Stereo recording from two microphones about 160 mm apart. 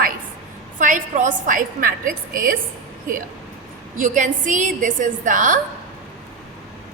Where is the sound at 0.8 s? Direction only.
50° right (ahead or behind).